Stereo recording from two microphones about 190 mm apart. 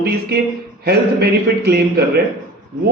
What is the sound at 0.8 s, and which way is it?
Speech, 55° right (ahead or behind).